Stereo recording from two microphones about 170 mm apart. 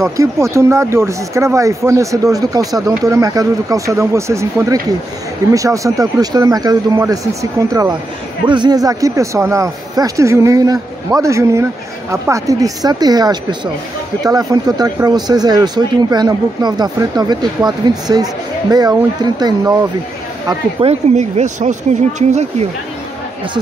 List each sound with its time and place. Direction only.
0.2 s speech: 15° right (ahead or behind)
20.8 s speech: 45° right (ahead or behind)